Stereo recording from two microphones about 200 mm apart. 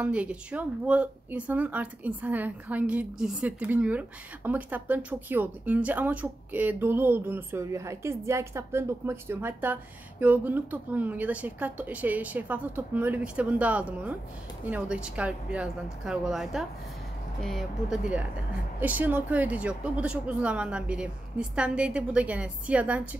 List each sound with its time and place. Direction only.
0.0 s speech: 5° right (ahead or behind)